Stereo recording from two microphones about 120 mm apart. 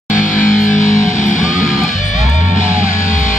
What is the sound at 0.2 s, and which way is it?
Music, 90° left.